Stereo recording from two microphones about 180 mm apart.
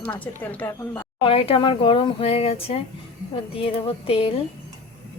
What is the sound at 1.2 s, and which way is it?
Speech, 30° left (ahead or behind).